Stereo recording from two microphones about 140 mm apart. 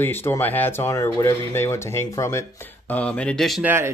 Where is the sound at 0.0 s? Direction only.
15° left (ahead or behind).